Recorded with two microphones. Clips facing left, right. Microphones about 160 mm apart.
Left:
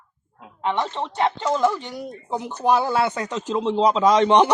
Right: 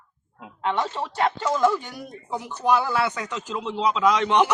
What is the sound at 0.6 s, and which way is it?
A man's voice, 20° left (ahead or behind).